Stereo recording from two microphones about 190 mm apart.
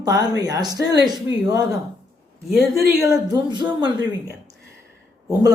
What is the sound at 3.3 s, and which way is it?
Speech, 25° right (ahead or behind).